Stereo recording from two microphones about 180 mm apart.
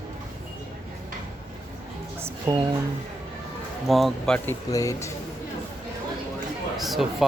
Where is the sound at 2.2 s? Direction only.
20° right (ahead or behind).